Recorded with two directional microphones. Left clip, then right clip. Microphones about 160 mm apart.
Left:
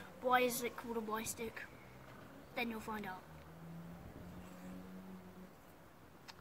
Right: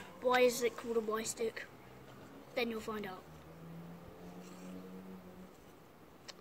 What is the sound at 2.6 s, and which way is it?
Speech, 10° left (ahead or behind).